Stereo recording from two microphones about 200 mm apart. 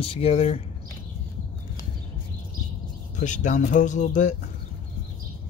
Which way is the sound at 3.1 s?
40° left (ahead or behind).